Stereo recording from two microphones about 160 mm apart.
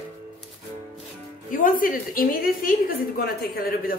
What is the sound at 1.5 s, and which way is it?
A woman's voice, 60° left (ahead or behind).